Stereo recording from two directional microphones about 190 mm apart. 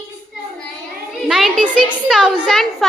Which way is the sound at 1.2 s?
Centre (ahead or behind).